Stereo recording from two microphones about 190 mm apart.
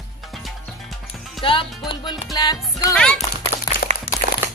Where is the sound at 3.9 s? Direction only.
40° right (ahead or behind).